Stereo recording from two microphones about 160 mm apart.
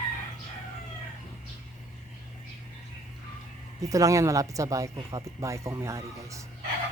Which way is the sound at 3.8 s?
20° right (ahead or behind).